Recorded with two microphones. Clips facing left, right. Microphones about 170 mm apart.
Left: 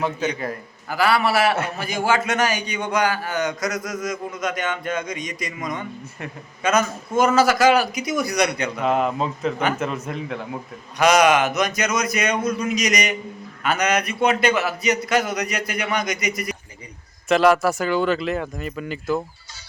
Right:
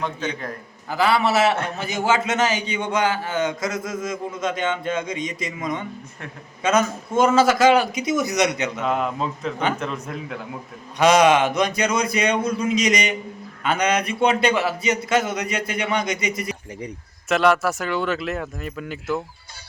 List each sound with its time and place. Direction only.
0.9 s a man's voice: 20° right (ahead or behind)
8.8 s speech: centre (ahead or behind)
10.9 s a man's voice: 25° right (ahead or behind)
17.2 s speech: centre (ahead or behind)